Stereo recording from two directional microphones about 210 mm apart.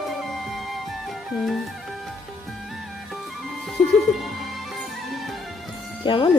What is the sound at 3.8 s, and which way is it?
Music, 30° left (ahead or behind).